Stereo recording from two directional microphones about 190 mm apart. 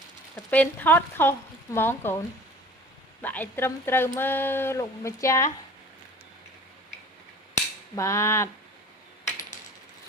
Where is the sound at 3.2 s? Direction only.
10° left (ahead or behind).